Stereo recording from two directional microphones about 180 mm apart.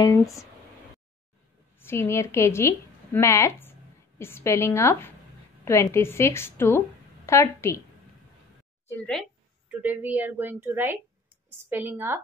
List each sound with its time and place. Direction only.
0.0 s speech: 20° left (ahead or behind)
1.8 s a woman's voice: 15° left (ahead or behind)
8.8 s speech: 5° left (ahead or behind)
9.7 s a woman's voice: 10° right (ahead or behind)